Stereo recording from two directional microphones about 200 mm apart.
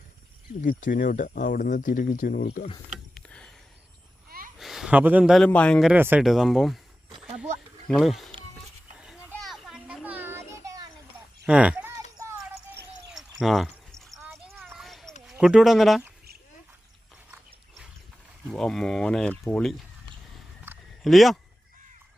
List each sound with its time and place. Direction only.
0.6 s speech: 40° left (ahead or behind)
3.2 s a sound: 5° left (ahead or behind)
4.3 s a sound: 45° right (ahead or behind)
4.5 s speech: centre (ahead or behind)
5.9 s speech: 10° right (ahead or behind)
7.9 s speech: centre (ahead or behind)
9.3 s child singing: centre (ahead or behind); by 10.8 s 15° right (ahead or behind)
11.4 s a sound: 5° right (ahead or behind)
13.1 s a sound: centre (ahead or behind)
15.3 s speech: 5° right (ahead or behind)
18.4 s speech: centre (ahead or behind)
21.0 s speech: centre (ahead or behind)